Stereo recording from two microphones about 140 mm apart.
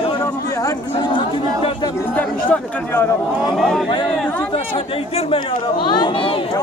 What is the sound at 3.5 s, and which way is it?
Speech, centre (ahead or behind).